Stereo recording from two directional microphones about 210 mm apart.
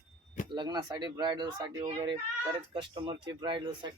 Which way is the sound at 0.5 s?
20° right (ahead or behind).